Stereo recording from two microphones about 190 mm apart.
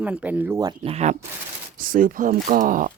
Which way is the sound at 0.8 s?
35° right (ahead or behind).